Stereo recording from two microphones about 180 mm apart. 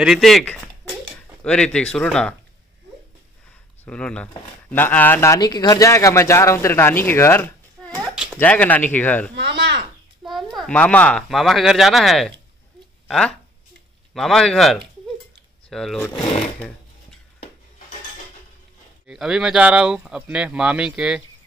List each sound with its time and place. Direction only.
0.0 s speech: centre (ahead or behind)
3.8 s a man's voice: 5° left (ahead or behind)
8.1 s a sound: 5° right (ahead or behind)
8.4 s a man's voice: 10° left (ahead or behind)
9.3 s speech: 70° right (ahead or behind)
10.2 s speech: centre (ahead or behind)
19.0 s speech: 5° right (ahead or behind)